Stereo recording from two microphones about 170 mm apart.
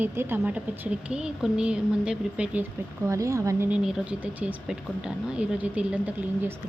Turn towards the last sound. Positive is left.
turn(degrees=-10)  # may be behind; listen again after turning